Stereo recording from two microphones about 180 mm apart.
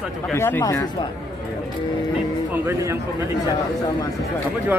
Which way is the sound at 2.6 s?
15° right (ahead or behind).